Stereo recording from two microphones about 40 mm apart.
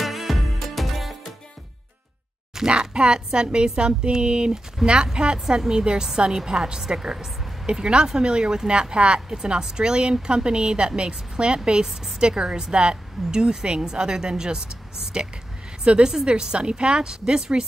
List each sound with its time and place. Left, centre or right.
0.0 s music: centre
2.7 s a woman's voice: right
15.8 s a woman's voice: right